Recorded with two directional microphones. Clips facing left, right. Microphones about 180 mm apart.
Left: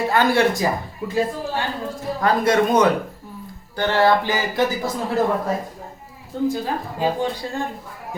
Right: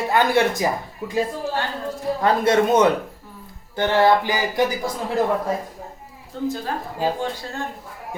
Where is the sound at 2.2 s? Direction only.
25° right (ahead or behind).